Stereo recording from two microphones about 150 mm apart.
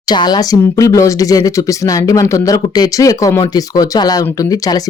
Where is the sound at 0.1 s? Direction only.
25° left (ahead or behind).